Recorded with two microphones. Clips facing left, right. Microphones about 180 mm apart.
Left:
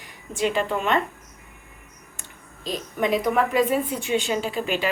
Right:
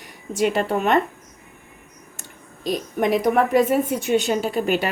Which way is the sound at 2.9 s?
50° right (ahead or behind).